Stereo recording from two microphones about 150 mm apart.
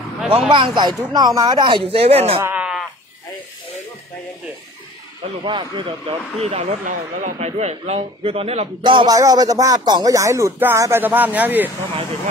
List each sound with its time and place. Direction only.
0.5 s speech: 30° right (ahead or behind)
2.4 s bleat: 10° right (ahead or behind)
5.4 s speech: 30° right (ahead or behind)
6.9 s a man's voice: 55° right (ahead or behind); by 11.7 s 10° right (ahead or behind)